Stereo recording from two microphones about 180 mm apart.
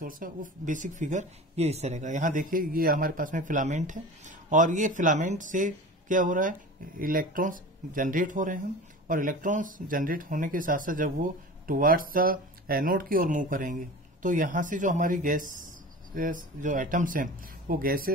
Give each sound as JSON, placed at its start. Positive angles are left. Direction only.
{"t": 0.0, "sound": "speech", "side_deg": -50}